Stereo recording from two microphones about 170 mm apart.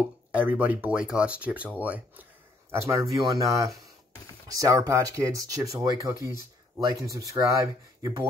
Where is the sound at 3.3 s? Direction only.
20° right (ahead or behind).